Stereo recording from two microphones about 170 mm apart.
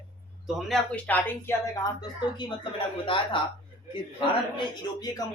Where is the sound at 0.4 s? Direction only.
5° left (ahead or behind).